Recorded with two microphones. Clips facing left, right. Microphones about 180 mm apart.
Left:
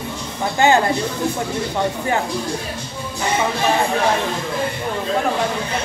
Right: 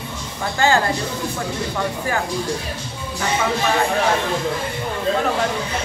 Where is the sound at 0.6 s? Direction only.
20° left (ahead or behind).